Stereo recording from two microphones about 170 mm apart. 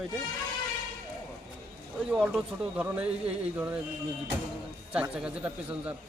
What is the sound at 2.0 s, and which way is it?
Speech, 5° right (ahead or behind).